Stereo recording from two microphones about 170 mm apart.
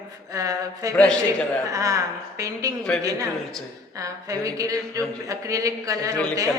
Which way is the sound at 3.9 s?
20° right (ahead or behind).